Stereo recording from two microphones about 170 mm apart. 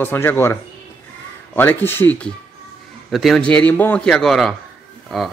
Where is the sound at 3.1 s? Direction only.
Centre (ahead or behind).